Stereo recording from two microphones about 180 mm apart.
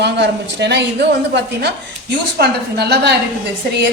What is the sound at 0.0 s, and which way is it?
A woman's voice, 70° right (ahead or behind).